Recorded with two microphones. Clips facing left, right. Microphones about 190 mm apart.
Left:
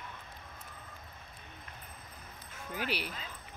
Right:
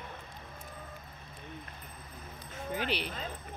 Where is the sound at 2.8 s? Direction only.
10° left (ahead or behind).